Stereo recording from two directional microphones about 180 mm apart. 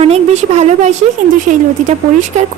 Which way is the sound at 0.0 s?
35° right (ahead or behind).